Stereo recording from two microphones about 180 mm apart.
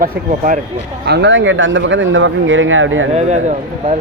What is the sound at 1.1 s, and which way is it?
Speech, 80° right.